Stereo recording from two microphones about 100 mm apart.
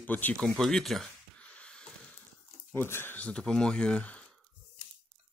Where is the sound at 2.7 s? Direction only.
20° left (ahead or behind).